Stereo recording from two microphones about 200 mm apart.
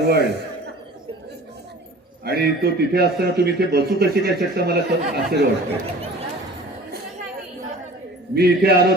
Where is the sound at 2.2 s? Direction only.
50° right (ahead or behind).